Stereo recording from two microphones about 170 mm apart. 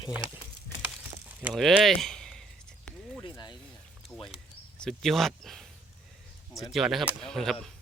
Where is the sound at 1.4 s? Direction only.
5° right (ahead or behind).